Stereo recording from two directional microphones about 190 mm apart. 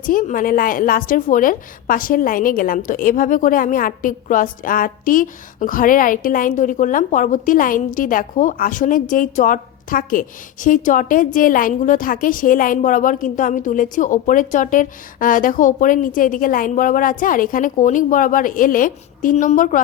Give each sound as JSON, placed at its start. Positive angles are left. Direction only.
{"t": 0.0, "sound": "a woman's voice", "side_deg": 45}